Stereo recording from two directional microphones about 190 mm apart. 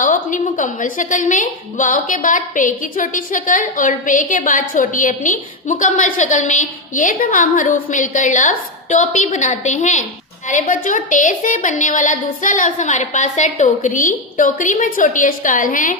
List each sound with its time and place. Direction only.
0.0 s a woman's voice: 45° left (ahead or behind)